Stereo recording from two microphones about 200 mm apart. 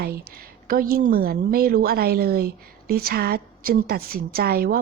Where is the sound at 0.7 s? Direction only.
45° right (ahead or behind).